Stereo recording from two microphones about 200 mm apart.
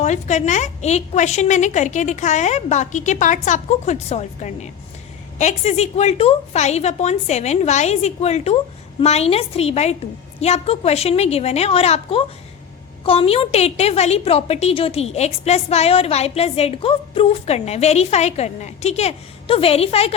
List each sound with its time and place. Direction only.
0.0 s a woman's voice: 35° left (ahead or behind)